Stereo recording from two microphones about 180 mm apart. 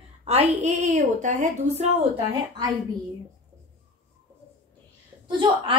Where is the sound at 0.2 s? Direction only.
35° right (ahead or behind).